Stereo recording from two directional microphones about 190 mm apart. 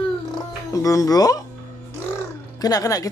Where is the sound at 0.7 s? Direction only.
15° left (ahead or behind).